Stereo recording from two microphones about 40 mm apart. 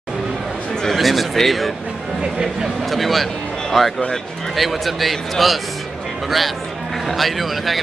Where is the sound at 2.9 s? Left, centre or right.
Centre.